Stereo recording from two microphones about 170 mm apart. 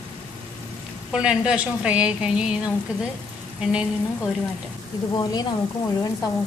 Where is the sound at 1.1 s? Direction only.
5° right (ahead or behind).